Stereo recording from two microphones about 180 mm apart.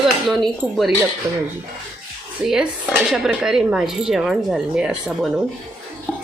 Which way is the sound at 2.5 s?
Centre (ahead or behind).